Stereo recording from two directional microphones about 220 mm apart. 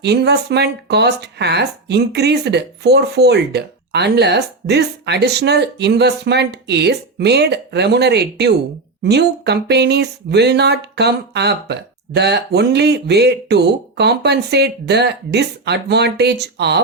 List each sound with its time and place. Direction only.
0.0 s speech: 50° right (ahead or behind)